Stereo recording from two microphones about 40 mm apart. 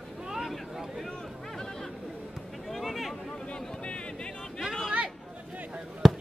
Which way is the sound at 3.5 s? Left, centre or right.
Left.